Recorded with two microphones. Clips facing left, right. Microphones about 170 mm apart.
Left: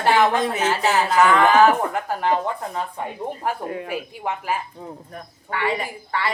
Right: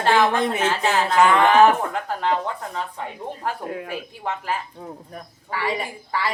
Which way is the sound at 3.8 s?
10° left (ahead or behind).